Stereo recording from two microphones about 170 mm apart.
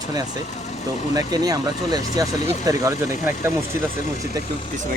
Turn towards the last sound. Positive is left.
turn(degrees=-15)  # may be behind; listen again after turning